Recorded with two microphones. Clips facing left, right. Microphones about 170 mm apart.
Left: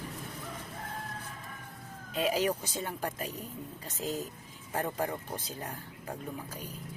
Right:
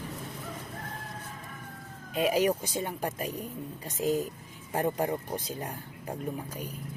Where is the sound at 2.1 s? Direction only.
10° right (ahead or behind).